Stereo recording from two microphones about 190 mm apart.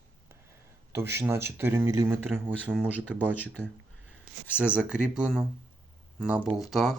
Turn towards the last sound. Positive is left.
turn(degrees=0)  # may be behind; listen again after turning